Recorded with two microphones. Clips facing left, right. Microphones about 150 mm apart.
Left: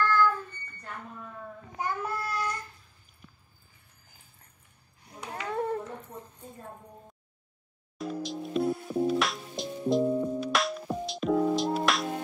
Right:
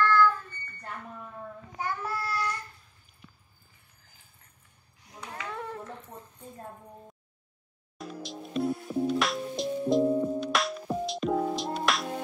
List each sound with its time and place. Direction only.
0.0 s child singing: 15° left (ahead or behind)
1.8 s child singing: 20° left (ahead or behind)
5.5 s a sound: 50° left (ahead or behind)
8.0 s music: centre (ahead or behind)